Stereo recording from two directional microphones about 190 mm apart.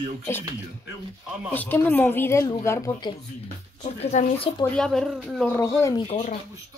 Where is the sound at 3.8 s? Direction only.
35° left (ahead or behind).